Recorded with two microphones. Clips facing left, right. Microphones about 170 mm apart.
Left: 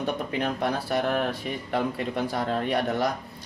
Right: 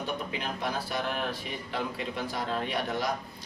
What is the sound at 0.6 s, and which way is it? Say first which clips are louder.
Speech: left 4 dB; 55° left (ahead or behind).